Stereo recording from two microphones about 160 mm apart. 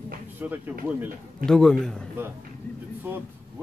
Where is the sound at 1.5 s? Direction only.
5° left (ahead or behind).